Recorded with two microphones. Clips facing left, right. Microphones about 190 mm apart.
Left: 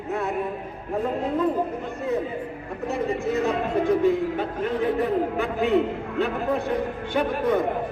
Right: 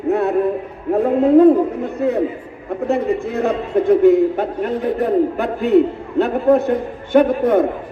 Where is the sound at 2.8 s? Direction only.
60° right (ahead or behind).